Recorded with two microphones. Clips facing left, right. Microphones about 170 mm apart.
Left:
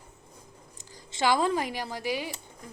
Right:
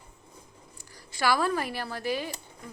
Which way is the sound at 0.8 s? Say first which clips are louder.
Left 2 dB; 20° left (ahead or behind).